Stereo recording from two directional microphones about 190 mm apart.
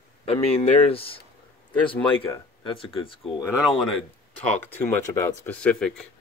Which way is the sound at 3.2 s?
Centre (ahead or behind).